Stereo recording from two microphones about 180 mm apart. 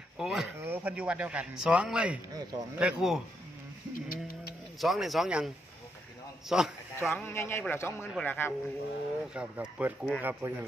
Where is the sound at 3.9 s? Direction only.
55° left (ahead or behind).